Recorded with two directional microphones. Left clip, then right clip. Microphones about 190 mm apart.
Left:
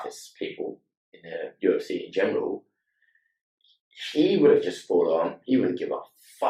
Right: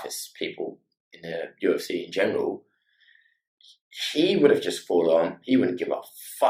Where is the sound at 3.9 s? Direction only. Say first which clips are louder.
Even; 15° right (ahead or behind).